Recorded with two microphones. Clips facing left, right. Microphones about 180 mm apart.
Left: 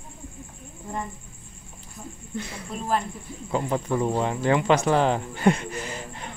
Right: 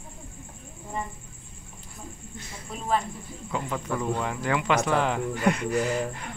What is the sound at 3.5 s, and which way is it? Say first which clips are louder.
Speech: left 5 dB; 30° left (ahead or behind).